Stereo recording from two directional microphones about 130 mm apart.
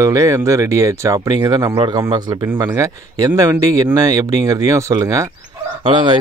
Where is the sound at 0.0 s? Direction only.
25° right (ahead or behind).